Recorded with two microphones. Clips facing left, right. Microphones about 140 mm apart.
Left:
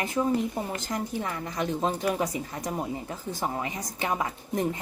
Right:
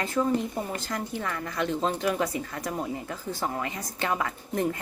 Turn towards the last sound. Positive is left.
turn(degrees=20)  # may be behind; listen again after turning